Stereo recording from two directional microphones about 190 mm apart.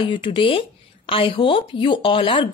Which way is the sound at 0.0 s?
25° left (ahead or behind).